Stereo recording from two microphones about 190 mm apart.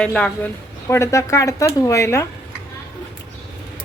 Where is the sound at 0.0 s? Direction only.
5° left (ahead or behind).